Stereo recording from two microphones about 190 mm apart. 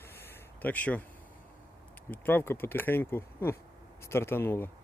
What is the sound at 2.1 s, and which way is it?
Speech, 10° left (ahead or behind).